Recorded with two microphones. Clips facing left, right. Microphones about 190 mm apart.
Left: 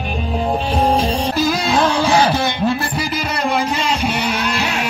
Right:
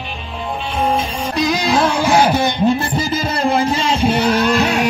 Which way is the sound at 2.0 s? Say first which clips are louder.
Right 2 dB; 15° right (ahead or behind).